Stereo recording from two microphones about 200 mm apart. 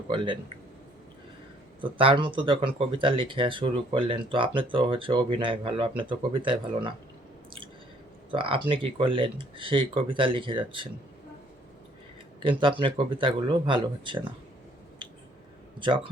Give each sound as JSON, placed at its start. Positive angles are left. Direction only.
{"t": 1.8, "sound": "speech", "side_deg": -25}
{"t": 8.3, "sound": "speech", "side_deg": -25}
{"t": 12.4, "sound": "speech", "side_deg": -25}